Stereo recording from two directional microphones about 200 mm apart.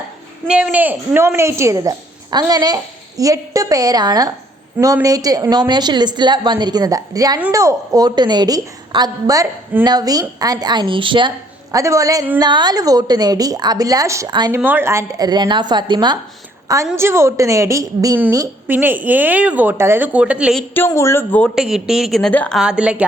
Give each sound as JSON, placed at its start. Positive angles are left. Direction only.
{"t": 0.4, "sound": "a woman's voice", "side_deg": -5}
{"t": 20.7, "sound": "speech", "side_deg": 15}
{"t": 21.5, "sound": "speech", "side_deg": -5}